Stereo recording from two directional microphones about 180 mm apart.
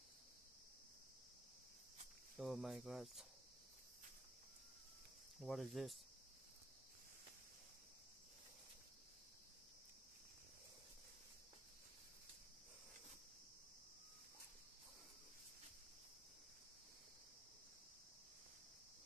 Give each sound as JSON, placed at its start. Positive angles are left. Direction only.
{"t": 2.3, "sound": "speech", "side_deg": 0}
{"t": 5.4, "sound": "speech", "side_deg": 0}